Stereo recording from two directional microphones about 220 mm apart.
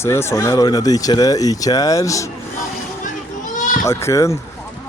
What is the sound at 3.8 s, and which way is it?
Speech, 15° left (ahead or behind).